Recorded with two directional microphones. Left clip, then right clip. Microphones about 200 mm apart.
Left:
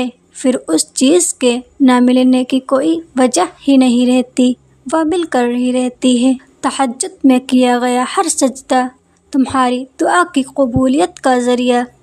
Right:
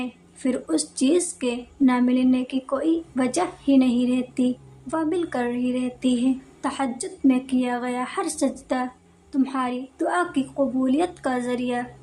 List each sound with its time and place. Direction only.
0.0 s a woman's voice: 45° left (ahead or behind)